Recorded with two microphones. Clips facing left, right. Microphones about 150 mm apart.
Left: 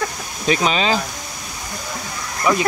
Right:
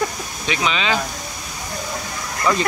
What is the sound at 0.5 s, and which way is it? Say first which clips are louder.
Speech: left 4 dB; 40° left (ahead or behind).